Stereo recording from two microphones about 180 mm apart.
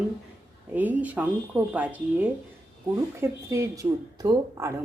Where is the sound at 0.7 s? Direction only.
10° right (ahead or behind).